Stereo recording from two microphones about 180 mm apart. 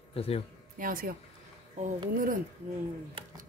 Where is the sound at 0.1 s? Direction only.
35° left (ahead or behind).